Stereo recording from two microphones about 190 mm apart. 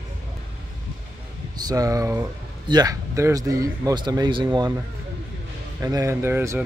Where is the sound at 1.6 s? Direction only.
20° right (ahead or behind).